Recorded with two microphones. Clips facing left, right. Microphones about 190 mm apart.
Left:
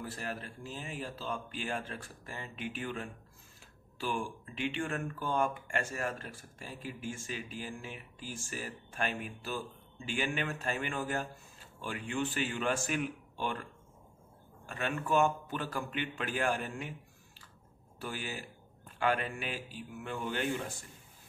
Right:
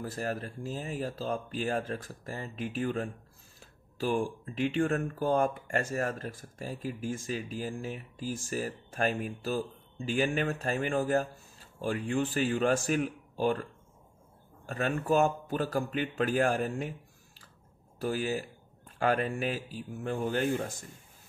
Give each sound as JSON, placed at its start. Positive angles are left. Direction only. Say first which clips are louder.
{"t": 0.0, "sound": "speech", "louder": "right 6 dB", "side_deg": -40}
{"t": 14.7, "sound": "speech", "louder": "right 4 dB", "side_deg": -40}
{"t": 17.9, "sound": "speech", "louder": "right 9 dB", "side_deg": -40}